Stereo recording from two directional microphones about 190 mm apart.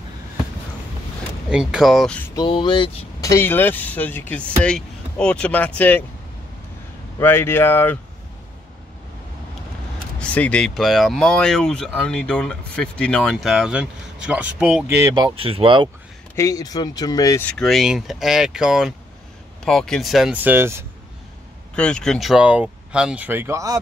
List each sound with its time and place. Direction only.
1.5 s speech: 5° right (ahead or behind)
2.3 s speech: 25° left (ahead or behind)
7.2 s speech: 10° left (ahead or behind)
10.1 s speech: 5° left (ahead or behind); by 15.9 s 25° right (ahead or behind)
16.3 s speech: 20° left (ahead or behind)
17.5 s speech: centre (ahead or behind)
21.7 s speech: 5° left (ahead or behind); by 23.8 s 15° right (ahead or behind)